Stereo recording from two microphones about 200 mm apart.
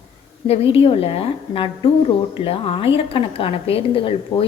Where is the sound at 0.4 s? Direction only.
30° left (ahead or behind).